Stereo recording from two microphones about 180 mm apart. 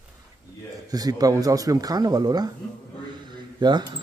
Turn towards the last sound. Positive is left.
turn(degrees=-25)  # may be behind; listen again after turning